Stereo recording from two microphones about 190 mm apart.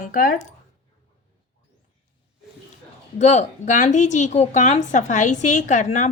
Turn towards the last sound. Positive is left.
turn(degrees=40)  # may be behind; listen again after turning